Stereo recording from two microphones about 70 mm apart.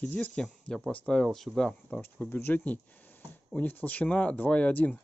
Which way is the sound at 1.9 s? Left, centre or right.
Left.